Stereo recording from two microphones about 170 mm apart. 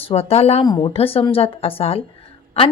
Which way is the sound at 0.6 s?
25° left (ahead or behind).